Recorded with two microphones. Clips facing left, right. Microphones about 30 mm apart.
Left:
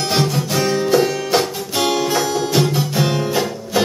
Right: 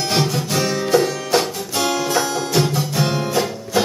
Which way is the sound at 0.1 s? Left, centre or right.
Centre.